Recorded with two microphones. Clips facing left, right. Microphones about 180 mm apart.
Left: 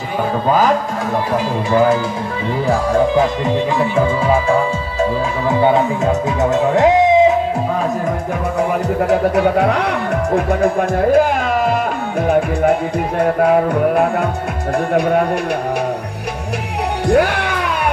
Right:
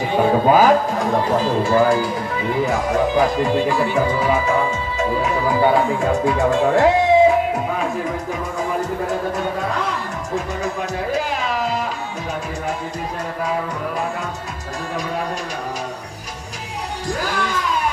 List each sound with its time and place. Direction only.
2.6 s music: 30° left (ahead or behind)
5.5 s music: 20° left (ahead or behind)
8.5 s speech: 70° left (ahead or behind)
13.2 s music: 60° left (ahead or behind)
17.1 s music: 65° left (ahead or behind)